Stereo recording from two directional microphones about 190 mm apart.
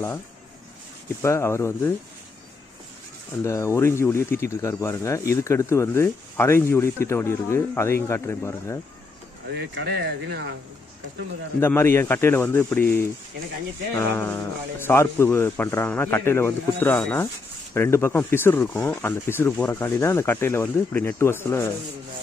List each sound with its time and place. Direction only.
1.2 s speech: 15° left (ahead or behind)
3.4 s speech: 15° left (ahead or behind)
9.6 s speech: 65° right (ahead or behind)
11.6 s speech: 10° left (ahead or behind)